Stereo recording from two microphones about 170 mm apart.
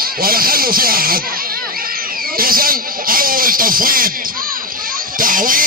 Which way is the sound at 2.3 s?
60° right (ahead or behind).